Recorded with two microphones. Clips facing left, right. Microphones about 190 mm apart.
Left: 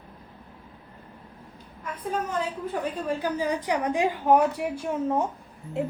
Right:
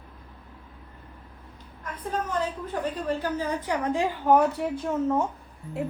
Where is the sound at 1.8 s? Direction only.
10° left (ahead or behind).